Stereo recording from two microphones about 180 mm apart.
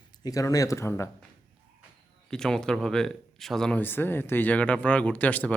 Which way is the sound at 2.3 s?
5° left (ahead or behind).